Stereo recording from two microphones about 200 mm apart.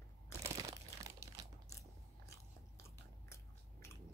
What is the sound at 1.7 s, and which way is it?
Biting, 15° left (ahead or behind).